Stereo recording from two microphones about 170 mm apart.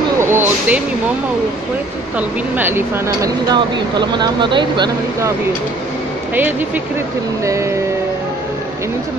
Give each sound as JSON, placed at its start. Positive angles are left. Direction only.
{"t": 0.2, "sound": "speech", "side_deg": -15}
{"t": 2.1, "sound": "speech", "side_deg": -10}
{"t": 6.3, "sound": "speech", "side_deg": -10}